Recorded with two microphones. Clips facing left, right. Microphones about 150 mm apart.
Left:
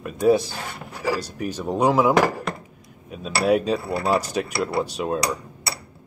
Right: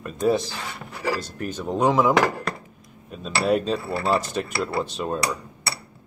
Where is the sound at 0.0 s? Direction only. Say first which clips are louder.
Left 3 dB; 5° left (ahead or behind).